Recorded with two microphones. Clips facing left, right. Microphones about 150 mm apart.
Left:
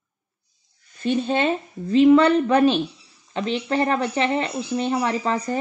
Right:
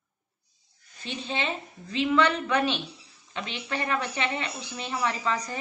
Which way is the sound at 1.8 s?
40° left (ahead or behind).